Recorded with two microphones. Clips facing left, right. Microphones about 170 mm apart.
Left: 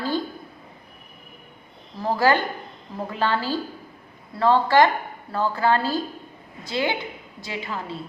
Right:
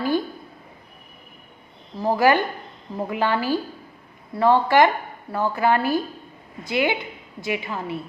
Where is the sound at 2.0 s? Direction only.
20° right (ahead or behind).